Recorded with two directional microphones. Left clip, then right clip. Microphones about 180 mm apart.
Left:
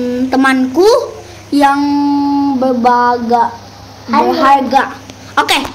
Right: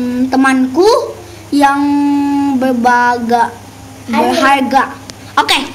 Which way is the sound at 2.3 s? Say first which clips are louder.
Left 1 dB; 25° right (ahead or behind).